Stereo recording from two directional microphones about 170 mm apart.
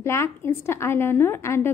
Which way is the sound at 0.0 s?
15° left (ahead or behind).